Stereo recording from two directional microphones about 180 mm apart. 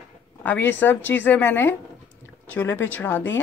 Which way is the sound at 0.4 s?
10° left (ahead or behind).